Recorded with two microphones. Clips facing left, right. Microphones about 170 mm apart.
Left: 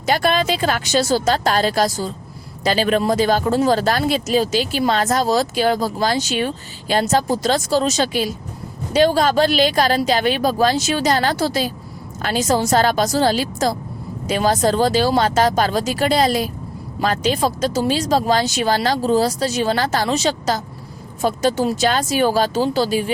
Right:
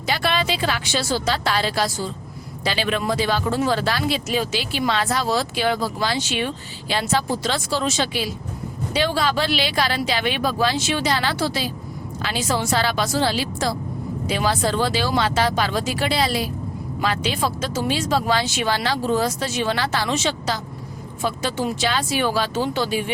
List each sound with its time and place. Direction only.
0.0 s speech: 45° left (ahead or behind)